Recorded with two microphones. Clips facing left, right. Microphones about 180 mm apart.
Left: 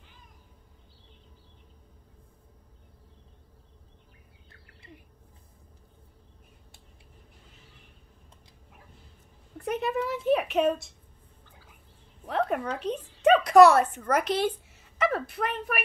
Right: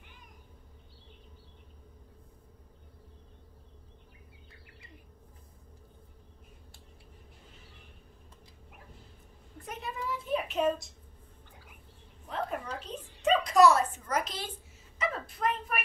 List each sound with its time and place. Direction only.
9.7 s speech: 70° left (ahead or behind)
12.3 s a woman's voice: 70° left (ahead or behind)